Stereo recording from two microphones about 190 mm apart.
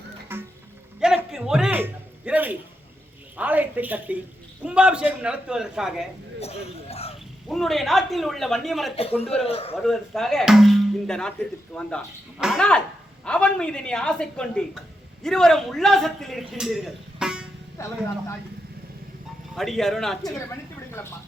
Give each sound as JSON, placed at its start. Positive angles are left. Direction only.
{"t": 0.3, "sound": "music", "side_deg": -10}
{"t": 0.9, "sound": "a sound", "side_deg": -5}
{"t": 3.3, "sound": "a woman's voice", "side_deg": -10}
{"t": 6.4, "sound": "speech", "side_deg": 30}
{"t": 7.4, "sound": "a man's voice", "side_deg": 0}
{"t": 9.0, "sound": "a man's voice", "side_deg": 30}
{"t": 9.8, "sound": "a man's voice", "side_deg": 0}
{"t": 17.8, "sound": "speech", "side_deg": 15}
{"t": 19.5, "sound": "a man's voice", "side_deg": 0}